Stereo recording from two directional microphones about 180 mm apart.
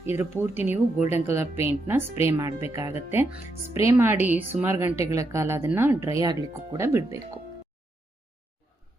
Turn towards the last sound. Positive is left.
turn(degrees=-15)  # may be behind; listen again after turning